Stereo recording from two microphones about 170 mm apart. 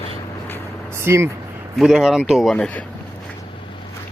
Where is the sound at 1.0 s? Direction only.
15° right (ahead or behind).